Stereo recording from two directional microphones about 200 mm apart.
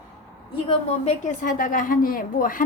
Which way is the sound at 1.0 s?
40° left (ahead or behind).